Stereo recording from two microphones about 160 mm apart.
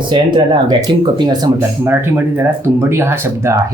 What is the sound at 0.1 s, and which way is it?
Speech, 30° right (ahead or behind).